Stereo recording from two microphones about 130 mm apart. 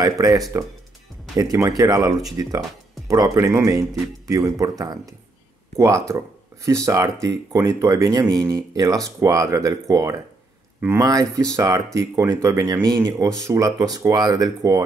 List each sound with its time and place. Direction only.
0.0 s speech: 30° right (ahead or behind)